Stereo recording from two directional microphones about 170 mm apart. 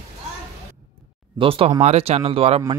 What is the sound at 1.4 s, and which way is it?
Speech, 30° right (ahead or behind).